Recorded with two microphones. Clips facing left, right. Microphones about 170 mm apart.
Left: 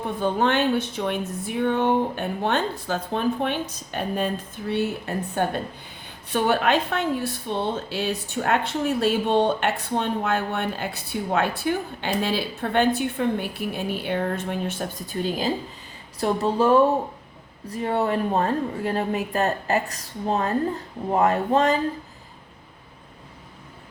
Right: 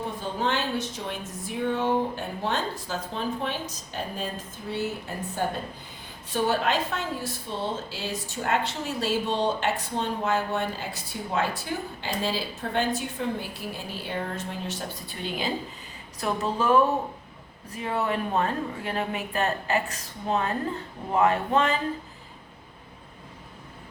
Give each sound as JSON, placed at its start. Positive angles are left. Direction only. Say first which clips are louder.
{"t": 0.2, "sound": "a woman's voice", "louder": "left 8 dB", "side_deg": 60}